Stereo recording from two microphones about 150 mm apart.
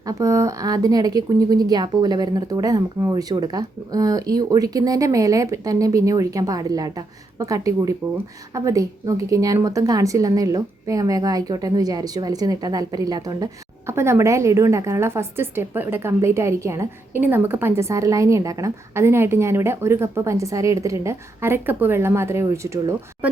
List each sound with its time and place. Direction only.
0.0 s a woman's voice: 25° right (ahead or behind)